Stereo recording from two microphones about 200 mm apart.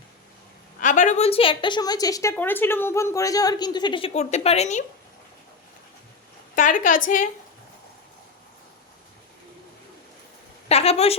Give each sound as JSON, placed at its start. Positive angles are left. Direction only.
{"t": 0.8, "sound": "a woman's voice", "side_deg": 40}
{"t": 6.6, "sound": "a woman's voice", "side_deg": 40}
{"t": 10.7, "sound": "a woman's voice", "side_deg": 30}